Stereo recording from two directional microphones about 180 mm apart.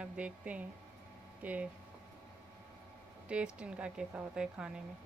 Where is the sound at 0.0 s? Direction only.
5° right (ahead or behind).